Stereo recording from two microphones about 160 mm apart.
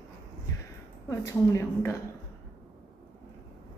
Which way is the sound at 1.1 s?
20° left (ahead or behind).